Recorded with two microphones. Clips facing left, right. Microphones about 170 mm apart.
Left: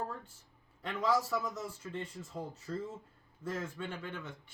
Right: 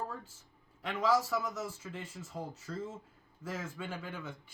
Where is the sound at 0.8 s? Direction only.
Centre (ahead or behind).